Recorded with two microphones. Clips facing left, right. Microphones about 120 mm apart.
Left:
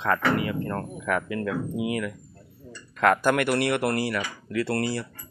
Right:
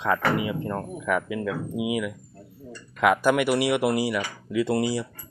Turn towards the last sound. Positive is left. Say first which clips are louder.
# right 3 dB
turn(degrees=-10)  # may be behind; listen again after turning